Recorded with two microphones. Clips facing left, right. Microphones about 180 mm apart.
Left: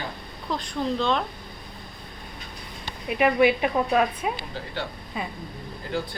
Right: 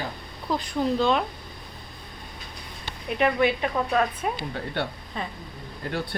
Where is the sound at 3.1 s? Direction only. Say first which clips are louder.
Left 3 dB; 10° left (ahead or behind).